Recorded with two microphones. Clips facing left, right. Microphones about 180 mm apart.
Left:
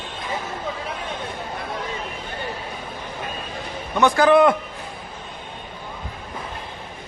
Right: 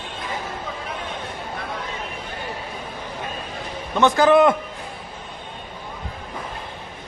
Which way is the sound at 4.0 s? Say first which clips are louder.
Even; 20° right (ahead or behind).